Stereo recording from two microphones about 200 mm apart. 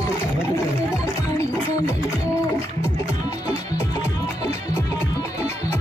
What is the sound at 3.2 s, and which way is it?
Music, 20° left (ahead or behind).